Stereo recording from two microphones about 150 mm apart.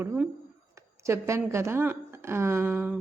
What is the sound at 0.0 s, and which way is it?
A woman's voice, 15° right (ahead or behind).